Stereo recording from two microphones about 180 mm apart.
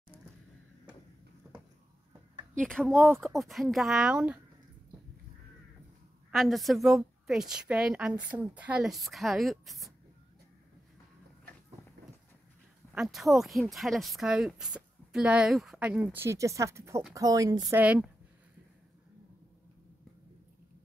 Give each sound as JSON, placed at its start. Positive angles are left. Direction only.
{"t": 2.6, "sound": "speech", "side_deg": 5}
{"t": 6.3, "sound": "speech", "side_deg": 0}
{"t": 12.9, "sound": "speech", "side_deg": 0}
{"t": 17.8, "sound": "a woman's voice", "side_deg": -5}